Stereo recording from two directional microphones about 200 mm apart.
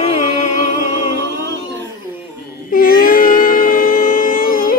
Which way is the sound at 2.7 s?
45° left (ahead or behind).